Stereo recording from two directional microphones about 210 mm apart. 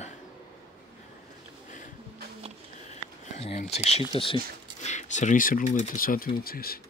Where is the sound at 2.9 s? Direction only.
30° left (ahead or behind).